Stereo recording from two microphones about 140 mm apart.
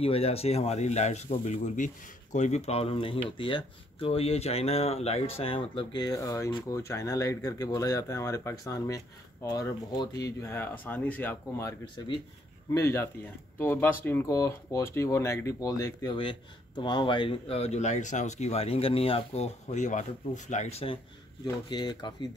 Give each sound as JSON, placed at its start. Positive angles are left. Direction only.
{"t": 0.0, "sound": "speech", "side_deg": 45}
{"t": 12.7, "sound": "speech", "side_deg": 20}
{"t": 21.6, "sound": "speech", "side_deg": 30}